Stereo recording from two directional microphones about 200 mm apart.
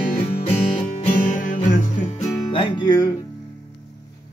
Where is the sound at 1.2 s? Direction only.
40° left (ahead or behind).